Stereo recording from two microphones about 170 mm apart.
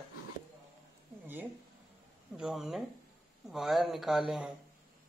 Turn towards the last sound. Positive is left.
turn(degrees=0)  # may be behind; listen again after turning